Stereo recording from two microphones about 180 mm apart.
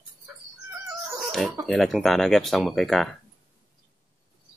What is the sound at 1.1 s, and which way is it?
Chicken, centre (ahead or behind).